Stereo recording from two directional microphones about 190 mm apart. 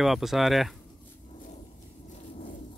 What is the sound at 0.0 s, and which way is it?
Speech, centre (ahead or behind).